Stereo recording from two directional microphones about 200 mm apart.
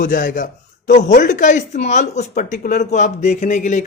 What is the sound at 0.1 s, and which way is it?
A man's voice, 40° left (ahead or behind).